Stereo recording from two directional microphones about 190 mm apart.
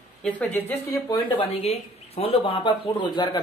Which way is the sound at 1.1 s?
30° left (ahead or behind).